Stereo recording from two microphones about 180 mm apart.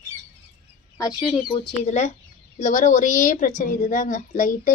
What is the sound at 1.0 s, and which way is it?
Speech, 25° left (ahead or behind).